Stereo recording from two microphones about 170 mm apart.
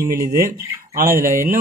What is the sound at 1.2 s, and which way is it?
Speech, 55° right (ahead or behind).